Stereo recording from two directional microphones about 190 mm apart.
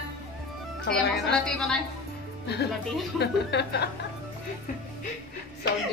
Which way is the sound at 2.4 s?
60° left (ahead or behind).